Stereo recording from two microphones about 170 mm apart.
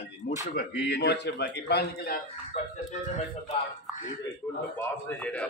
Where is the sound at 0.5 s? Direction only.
75° left (ahead or behind).